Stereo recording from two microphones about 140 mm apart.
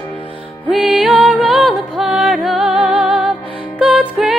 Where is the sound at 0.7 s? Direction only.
5° right (ahead or behind).